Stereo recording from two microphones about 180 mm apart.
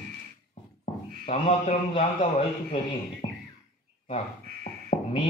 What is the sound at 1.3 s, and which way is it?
Speech, 35° left (ahead or behind).